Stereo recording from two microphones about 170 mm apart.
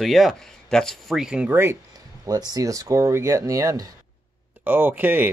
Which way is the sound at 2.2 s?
20° right (ahead or behind).